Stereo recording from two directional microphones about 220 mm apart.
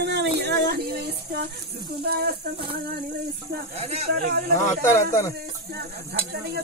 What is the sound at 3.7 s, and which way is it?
Speech, 30° right (ahead or behind).